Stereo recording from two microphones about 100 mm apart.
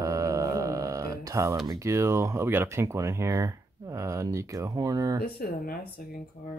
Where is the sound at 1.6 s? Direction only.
35° right (ahead or behind).